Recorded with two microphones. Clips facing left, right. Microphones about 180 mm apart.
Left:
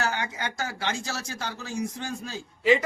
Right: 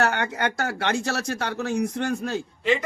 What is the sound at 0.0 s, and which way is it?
Speech, 65° right (ahead or behind).